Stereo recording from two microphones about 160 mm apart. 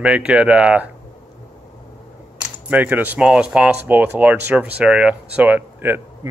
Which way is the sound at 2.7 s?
10° right (ahead or behind).